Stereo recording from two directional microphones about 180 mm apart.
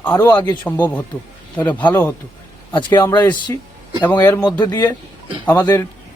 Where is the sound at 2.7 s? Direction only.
25° left (ahead or behind).